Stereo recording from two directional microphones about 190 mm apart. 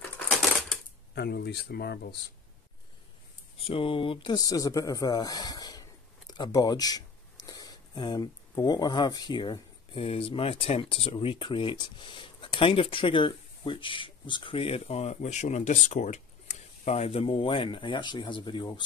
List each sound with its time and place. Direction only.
1.1 s speech: 60° left (ahead or behind)
3.5 s speech: 30° left (ahead or behind)